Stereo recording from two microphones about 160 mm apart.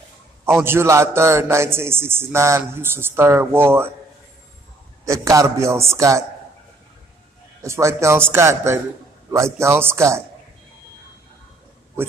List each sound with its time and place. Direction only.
0.5 s a man's voice: 15° right (ahead or behind)
5.0 s a man's voice: 20° right (ahead or behind)
7.6 s a man's voice: 20° right (ahead or behind)